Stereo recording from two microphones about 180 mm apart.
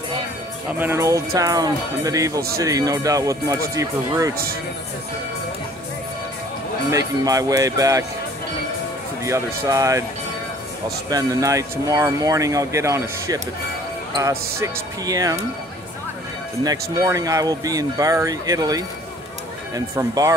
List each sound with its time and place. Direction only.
0.7 s speech: 10° right (ahead or behind)
6.9 s speech: 20° right (ahead or behind)
9.2 s speech: 15° right (ahead or behind)
11.1 s speech: 20° right (ahead or behind)
14.6 s speech: 20° right (ahead or behind)
16.6 s speech: 20° right (ahead or behind)